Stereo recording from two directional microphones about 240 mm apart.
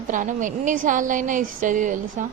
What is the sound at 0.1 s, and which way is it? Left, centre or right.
A woman's voice, right.